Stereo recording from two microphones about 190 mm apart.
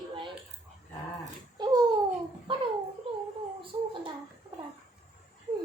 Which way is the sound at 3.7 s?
25° right (ahead or behind).